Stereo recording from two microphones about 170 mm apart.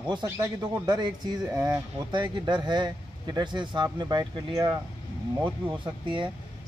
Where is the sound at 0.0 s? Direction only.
25° right (ahead or behind).